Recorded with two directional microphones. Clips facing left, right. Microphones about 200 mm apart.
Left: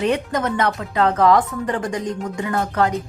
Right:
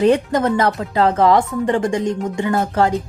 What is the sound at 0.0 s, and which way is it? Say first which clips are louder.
Speech: right 6 dB; 30° right (ahead or behind).